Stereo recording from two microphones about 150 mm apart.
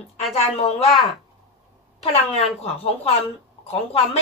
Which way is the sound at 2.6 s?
40° left (ahead or behind).